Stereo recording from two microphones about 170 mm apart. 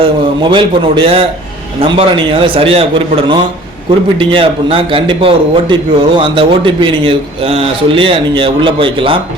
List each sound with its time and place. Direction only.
0.0 s a man's voice: 30° right (ahead or behind)
4.2 s a man's voice: 30° right (ahead or behind)